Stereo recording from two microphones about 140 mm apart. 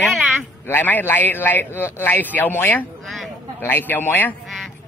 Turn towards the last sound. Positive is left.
turn(degrees=15)  # may be behind; listen again after turning